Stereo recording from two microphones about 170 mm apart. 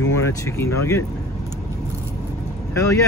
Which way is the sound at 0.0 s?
20° left (ahead or behind).